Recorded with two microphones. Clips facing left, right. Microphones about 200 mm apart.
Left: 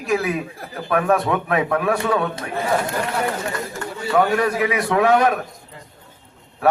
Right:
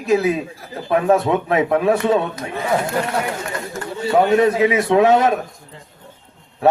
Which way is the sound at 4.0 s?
25° right (ahead or behind).